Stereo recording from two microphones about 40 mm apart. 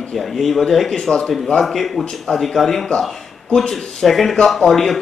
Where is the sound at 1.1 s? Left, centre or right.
Centre.